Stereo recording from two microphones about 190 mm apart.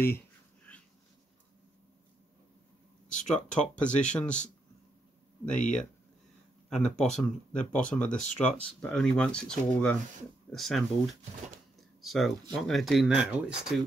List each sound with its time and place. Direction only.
3.1 s a sound: 5° left (ahead or behind)
3.5 s speech: 5° left (ahead or behind)
5.4 s speech: 5° left (ahead or behind)
8.2 s speech: 40° left (ahead or behind)
8.6 s speech: 5° left (ahead or behind)